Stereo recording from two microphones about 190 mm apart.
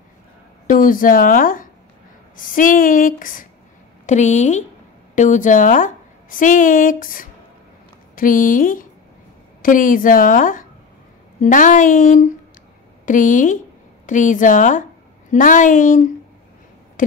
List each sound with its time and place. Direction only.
0.7 s a woman's voice: 45° left (ahead or behind)